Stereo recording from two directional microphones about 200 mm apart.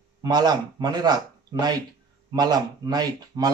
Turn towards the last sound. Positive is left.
turn(degrees=-20)  # may be behind; listen again after turning